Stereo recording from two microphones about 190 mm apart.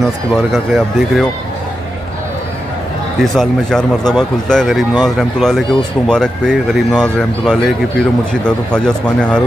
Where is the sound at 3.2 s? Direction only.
5° left (ahead or behind).